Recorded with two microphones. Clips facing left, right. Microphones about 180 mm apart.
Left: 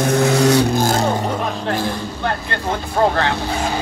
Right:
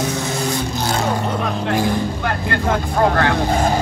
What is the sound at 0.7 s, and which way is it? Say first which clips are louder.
Vehicle: left 4 dB; 45° left (ahead or behind).